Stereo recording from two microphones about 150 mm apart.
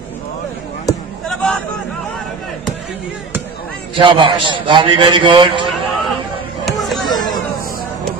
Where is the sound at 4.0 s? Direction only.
35° right (ahead or behind).